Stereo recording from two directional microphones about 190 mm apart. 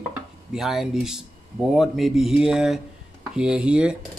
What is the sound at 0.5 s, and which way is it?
Speech, centre (ahead or behind).